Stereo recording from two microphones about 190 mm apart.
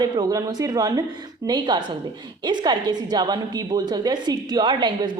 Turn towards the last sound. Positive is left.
turn(degrees=-25)  # may be behind; listen again after turning